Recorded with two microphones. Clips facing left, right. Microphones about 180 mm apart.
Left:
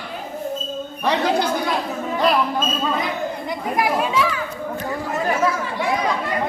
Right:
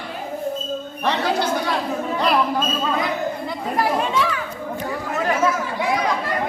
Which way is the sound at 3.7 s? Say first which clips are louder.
Even; 10° left (ahead or behind).